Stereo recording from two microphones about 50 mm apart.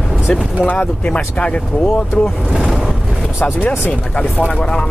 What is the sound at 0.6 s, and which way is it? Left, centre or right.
Speech, left.